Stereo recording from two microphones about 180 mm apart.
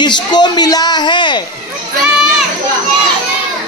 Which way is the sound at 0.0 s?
25° left (ahead or behind).